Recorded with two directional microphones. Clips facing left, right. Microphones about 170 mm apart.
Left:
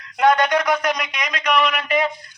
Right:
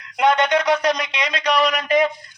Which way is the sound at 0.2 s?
20° right (ahead or behind).